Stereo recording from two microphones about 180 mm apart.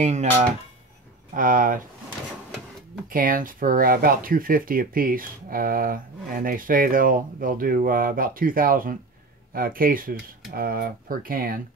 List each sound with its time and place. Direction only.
0.0 s speech: 40° right (ahead or behind)
3.1 s speech: 50° right (ahead or behind)